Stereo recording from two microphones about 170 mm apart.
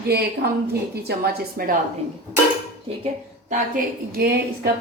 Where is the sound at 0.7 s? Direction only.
70° right (ahead or behind).